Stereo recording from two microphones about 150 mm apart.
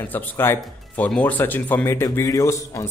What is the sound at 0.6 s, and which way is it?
Speech, 5° left (ahead or behind).